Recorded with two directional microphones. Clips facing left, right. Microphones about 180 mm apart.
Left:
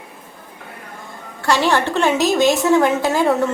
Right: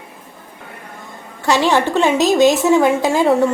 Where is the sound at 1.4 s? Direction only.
20° right (ahead or behind).